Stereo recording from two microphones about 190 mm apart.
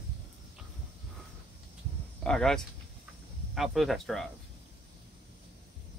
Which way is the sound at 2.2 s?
5° left (ahead or behind).